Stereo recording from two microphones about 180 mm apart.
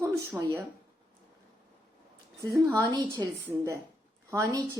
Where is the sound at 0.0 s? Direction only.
20° right (ahead or behind).